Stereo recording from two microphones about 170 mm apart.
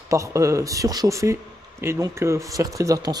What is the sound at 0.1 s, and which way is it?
Speech, 20° right (ahead or behind).